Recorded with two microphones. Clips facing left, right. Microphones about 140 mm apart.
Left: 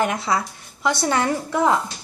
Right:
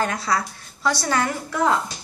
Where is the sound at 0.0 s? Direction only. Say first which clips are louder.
Left 2 dB; 20° left (ahead or behind).